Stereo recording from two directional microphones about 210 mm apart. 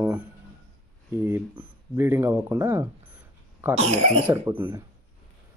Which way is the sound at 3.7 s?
30° right (ahead or behind).